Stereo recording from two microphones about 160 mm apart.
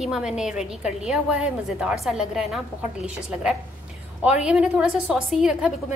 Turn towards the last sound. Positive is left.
turn(degrees=-5)  # may be behind; listen again after turning